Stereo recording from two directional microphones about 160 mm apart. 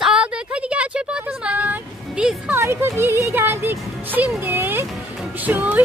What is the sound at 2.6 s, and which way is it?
A woman's voice, 15° right (ahead or behind).